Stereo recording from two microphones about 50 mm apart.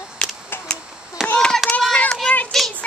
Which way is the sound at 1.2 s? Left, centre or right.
Centre.